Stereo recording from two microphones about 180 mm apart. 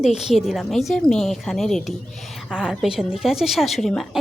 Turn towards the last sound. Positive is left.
turn(degrees=0)  # may be behind; listen again after turning